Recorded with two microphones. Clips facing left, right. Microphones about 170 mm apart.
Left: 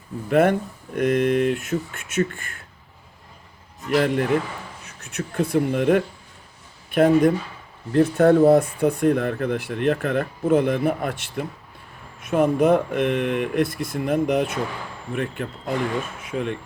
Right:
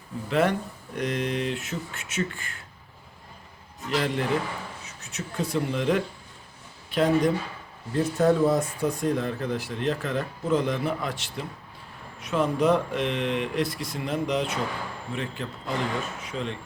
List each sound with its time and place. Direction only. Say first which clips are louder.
0.3 s speech: left 6 dB; 55° left (ahead or behind)
3.8 s speech: left 6 dB; 55° left (ahead or behind)